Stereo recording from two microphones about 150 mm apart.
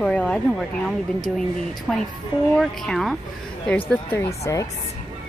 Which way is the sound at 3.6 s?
15° left (ahead or behind).